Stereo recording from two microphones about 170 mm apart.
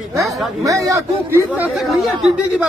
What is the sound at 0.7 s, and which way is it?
Speech, 15° right (ahead or behind).